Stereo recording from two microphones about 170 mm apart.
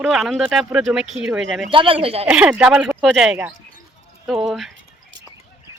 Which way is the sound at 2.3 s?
5° right (ahead or behind).